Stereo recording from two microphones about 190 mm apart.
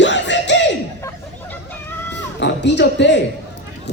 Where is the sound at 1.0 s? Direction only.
10° left (ahead or behind).